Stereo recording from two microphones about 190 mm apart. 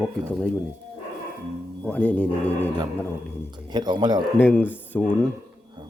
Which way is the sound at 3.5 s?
25° right (ahead or behind).